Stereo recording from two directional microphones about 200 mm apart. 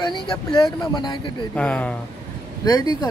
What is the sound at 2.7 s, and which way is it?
Speech, 20° left (ahead or behind).